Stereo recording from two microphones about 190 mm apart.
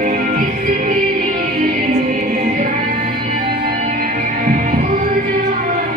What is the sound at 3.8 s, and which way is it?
Music, 45° right (ahead or behind).